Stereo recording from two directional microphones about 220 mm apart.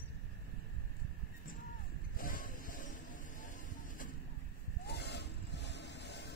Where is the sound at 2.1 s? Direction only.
40° left (ahead or behind).